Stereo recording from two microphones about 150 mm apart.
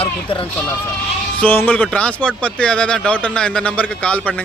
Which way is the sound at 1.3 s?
10° left (ahead or behind).